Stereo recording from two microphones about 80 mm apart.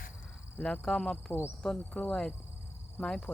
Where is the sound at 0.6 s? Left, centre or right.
Centre.